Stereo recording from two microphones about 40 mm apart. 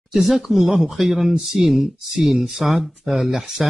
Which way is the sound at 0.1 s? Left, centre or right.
Centre.